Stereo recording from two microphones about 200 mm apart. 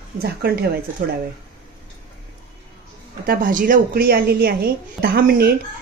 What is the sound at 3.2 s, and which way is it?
A woman's voice, 45° right (ahead or behind).